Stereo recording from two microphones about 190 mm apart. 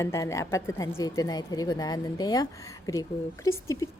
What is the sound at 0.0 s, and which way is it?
A woman's voice, 15° left (ahead or behind).